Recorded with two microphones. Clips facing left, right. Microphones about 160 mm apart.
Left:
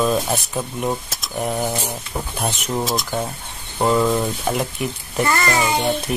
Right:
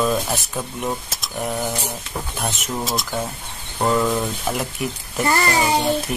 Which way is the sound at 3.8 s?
5° left (ahead or behind).